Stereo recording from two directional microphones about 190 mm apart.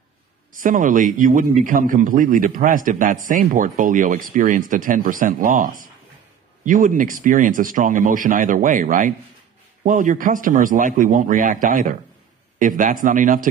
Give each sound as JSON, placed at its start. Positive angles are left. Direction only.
{"t": 0.6, "sound": "a man's voice", "side_deg": -45}